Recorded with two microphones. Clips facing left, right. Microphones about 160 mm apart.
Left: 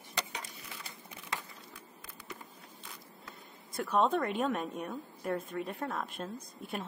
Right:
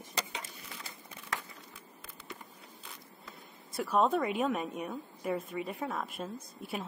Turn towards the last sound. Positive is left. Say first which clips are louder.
# right 1 dB
turn(degrees=-5)  # may be behind; listen again after turning